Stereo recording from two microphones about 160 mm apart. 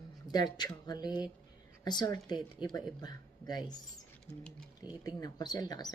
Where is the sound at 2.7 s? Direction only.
5° left (ahead or behind).